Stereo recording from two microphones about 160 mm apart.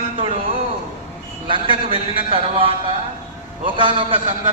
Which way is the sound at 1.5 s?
35° right (ahead or behind).